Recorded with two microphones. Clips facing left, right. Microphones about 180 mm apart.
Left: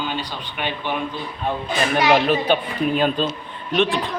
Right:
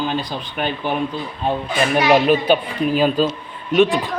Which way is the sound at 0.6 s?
40° right (ahead or behind).